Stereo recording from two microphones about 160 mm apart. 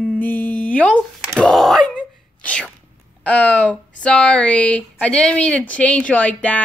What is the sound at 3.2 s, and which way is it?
Speech, 10° left (ahead or behind).